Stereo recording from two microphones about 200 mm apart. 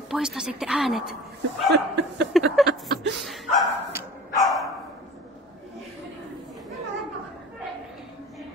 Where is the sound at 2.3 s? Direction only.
Centre (ahead or behind).